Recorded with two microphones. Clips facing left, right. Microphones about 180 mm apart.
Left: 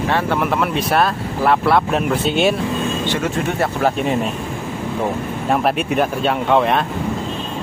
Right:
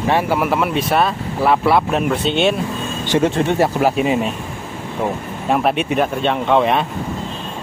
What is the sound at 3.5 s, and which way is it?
Speech, 5° right (ahead or behind).